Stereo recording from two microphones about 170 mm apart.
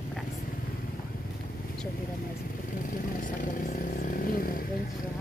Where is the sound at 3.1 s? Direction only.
50° left (ahead or behind).